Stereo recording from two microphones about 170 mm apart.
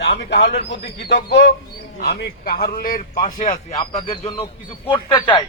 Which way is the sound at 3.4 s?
30° left (ahead or behind).